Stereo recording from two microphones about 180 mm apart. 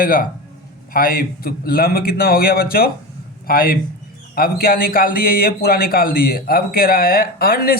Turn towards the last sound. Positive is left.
turn(degrees=55)  # may be behind; listen again after turning